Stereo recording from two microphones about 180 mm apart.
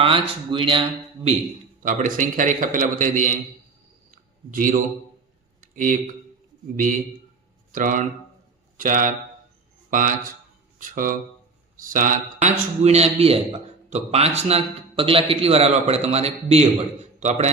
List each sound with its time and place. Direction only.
0.0 s speech: 30° right (ahead or behind)
1.8 s a man's voice: 45° right (ahead or behind)
4.1 s a sound: 45° right (ahead or behind)
7.7 s a man's voice: 45° right (ahead or behind)